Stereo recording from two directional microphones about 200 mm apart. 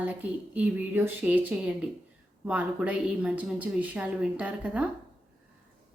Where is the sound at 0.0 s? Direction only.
10° right (ahead or behind).